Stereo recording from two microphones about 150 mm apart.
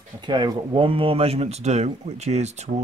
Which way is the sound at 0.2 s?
30° right (ahead or behind).